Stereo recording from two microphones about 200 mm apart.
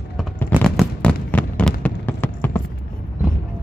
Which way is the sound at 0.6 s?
5° left (ahead or behind).